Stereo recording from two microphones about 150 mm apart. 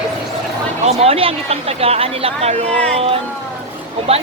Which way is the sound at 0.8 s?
45° right (ahead or behind).